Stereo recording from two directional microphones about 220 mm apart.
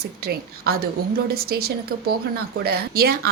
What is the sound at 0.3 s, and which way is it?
A woman's voice, 45° right (ahead or behind).